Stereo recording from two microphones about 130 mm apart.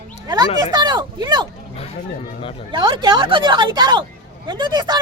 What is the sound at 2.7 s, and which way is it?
A woman's voice, 40° right (ahead or behind).